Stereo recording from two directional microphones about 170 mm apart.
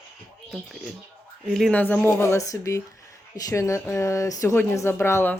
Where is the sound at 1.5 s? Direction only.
5° left (ahead or behind).